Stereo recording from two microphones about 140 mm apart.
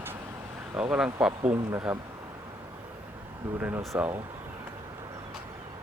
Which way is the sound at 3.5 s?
15° right (ahead or behind).